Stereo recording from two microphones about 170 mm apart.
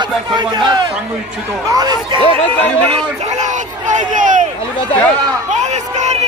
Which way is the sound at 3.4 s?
45° right (ahead or behind).